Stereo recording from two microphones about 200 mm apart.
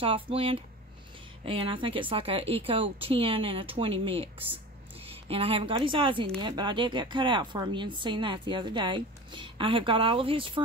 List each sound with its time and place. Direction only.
0.0 s a woman's voice: 25° right (ahead or behind)